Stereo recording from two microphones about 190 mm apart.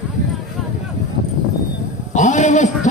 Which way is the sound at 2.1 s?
40° left (ahead or behind).